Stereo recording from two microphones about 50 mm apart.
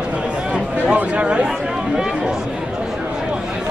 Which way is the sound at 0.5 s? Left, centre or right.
Right.